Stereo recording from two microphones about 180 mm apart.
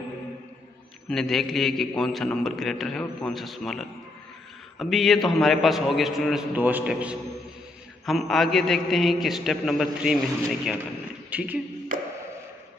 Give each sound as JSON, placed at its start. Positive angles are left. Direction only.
{"t": 1.0, "sound": "a man's voice", "side_deg": 0}
{"t": 11.2, "sound": "speech", "side_deg": -5}
{"t": 11.9, "sound": "a sound", "side_deg": -50}